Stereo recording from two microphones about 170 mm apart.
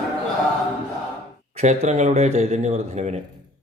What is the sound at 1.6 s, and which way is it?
A man's voice, 45° right (ahead or behind).